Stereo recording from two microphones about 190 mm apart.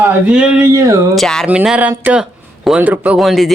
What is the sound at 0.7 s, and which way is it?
Speech, 15° right (ahead or behind).